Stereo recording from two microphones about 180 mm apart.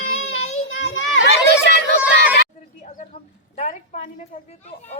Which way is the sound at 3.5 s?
35° left (ahead or behind).